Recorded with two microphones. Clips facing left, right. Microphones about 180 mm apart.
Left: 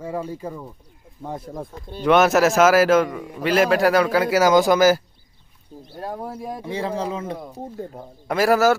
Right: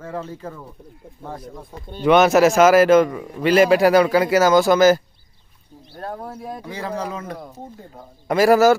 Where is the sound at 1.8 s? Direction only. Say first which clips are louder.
Right 2 dB; centre (ahead or behind).